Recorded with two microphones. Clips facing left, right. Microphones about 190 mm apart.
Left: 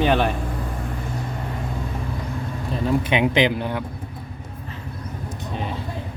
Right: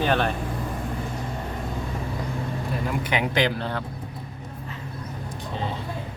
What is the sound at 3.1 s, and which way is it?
Speech, 20° left (ahead or behind).